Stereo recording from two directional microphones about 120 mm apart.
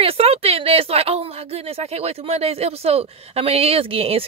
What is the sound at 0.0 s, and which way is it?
A woman's voice, 55° right (ahead or behind).